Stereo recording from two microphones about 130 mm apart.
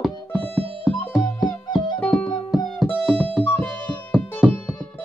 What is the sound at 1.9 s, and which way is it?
Music, 10° left (ahead or behind).